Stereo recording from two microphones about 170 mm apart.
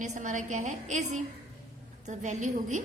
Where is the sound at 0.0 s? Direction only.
45° right (ahead or behind).